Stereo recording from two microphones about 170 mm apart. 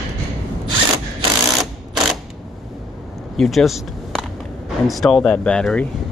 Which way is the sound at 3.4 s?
Centre (ahead or behind).